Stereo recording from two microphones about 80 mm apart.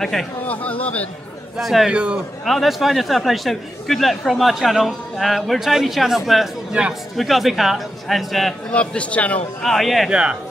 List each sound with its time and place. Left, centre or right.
0.0 s speech: centre
0.5 s speech: centre
1.6 s speech: centre
1.9 s a man's voice: centre
2.4 s speech: centre
8.7 s speech: centre
9.6 s speech: centre